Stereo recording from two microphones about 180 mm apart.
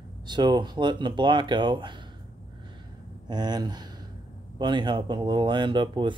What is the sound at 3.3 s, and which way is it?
Speech, 25° right (ahead or behind).